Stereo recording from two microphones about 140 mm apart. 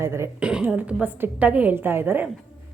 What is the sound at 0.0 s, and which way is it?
Speech, 20° right (ahead or behind).